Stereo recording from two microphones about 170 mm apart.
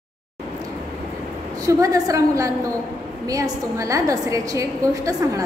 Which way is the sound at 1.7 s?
20° right (ahead or behind).